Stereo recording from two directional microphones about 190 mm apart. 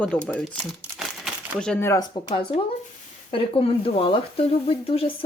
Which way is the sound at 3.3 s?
30° left (ahead or behind).